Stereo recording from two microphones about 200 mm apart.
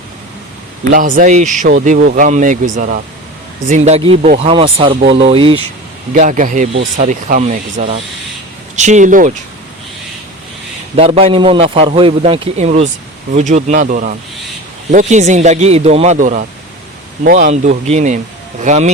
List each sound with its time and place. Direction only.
0.9 s a man's voice: 40° right (ahead or behind)
6.1 s speech: 40° right (ahead or behind)
10.9 s a man's voice: 30° right (ahead or behind)